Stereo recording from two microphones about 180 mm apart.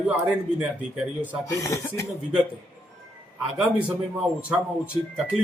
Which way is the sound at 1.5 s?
15° left (ahead or behind).